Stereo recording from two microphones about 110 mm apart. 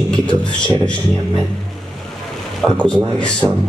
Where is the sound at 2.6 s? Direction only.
10° left (ahead or behind).